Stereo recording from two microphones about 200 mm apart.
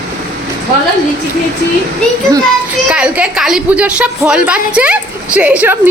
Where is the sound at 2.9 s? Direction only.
5° right (ahead or behind).